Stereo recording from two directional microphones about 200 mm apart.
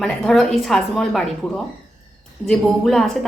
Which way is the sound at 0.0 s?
Centre (ahead or behind).